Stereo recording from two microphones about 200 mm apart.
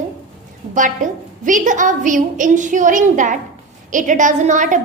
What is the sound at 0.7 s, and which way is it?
A woman's voice, 40° right (ahead or behind).